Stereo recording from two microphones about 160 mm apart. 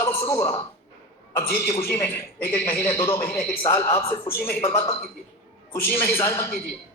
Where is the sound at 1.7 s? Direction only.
15° left (ahead or behind).